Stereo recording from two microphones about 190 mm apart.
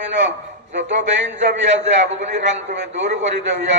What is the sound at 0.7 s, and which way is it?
A man's voice, 70° right (ahead or behind).